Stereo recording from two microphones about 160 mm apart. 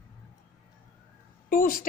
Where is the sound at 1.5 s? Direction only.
60° left (ahead or behind).